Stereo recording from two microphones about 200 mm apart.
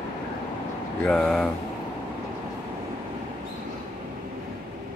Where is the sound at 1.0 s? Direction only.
5° left (ahead or behind).